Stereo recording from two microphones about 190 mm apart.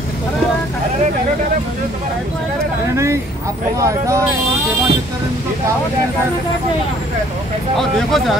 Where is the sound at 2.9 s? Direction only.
15° right (ahead or behind).